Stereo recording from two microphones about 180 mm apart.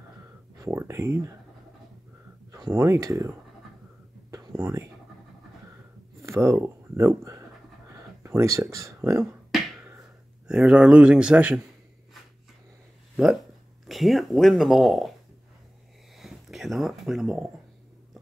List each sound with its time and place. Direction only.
0.6 s speech: 15° right (ahead or behind)
2.5 s speech: 15° right (ahead or behind)
4.3 s whispering: 20° right (ahead or behind)
6.2 s speech: 15° right (ahead or behind)
10.5 s speech: 5° right (ahead or behind)
13.1 s speech: 5° right (ahead or behind)
16.2 s a sound: centre (ahead or behind)